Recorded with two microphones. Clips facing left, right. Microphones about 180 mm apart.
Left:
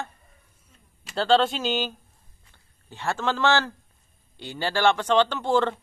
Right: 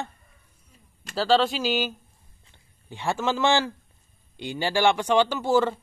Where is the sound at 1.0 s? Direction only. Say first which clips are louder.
Left 1 dB; centre (ahead or behind).